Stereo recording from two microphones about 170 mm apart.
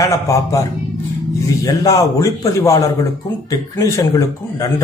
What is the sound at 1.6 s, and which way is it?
A man's voice, 20° left (ahead or behind).